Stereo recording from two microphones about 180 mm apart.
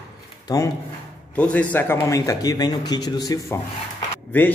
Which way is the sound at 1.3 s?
5° left (ahead or behind).